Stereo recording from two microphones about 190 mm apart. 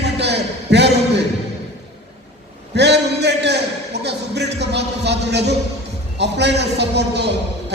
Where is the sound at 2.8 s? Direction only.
65° right (ahead or behind).